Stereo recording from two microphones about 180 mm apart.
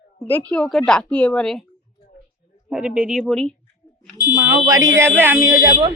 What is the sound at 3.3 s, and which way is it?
Speech, 5° left (ahead or behind).